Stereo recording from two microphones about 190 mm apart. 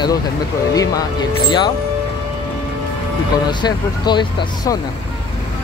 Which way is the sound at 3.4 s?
20° left (ahead or behind).